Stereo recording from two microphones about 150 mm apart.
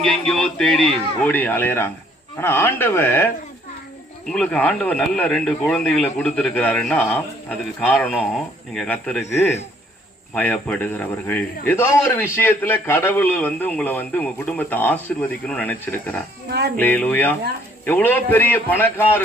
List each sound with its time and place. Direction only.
0.0 s speech: 5° left (ahead or behind)
4.3 s speech: 5° left (ahead or behind)
10.3 s speech: 10° left (ahead or behind)
16.5 s speech: 90° right
16.7 s speech: 10° left (ahead or behind)